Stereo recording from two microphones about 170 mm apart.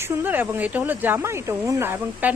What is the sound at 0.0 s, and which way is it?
Speech, 10° right (ahead or behind).